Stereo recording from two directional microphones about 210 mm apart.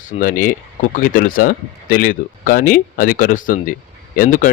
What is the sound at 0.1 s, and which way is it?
Speech, 40° left (ahead or behind).